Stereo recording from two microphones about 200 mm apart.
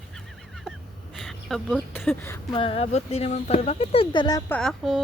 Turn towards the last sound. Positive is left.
turn(degrees=0)  # may be behind; listen again after turning